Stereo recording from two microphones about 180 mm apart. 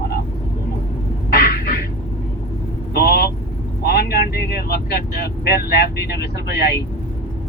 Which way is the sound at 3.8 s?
60° left (ahead or behind).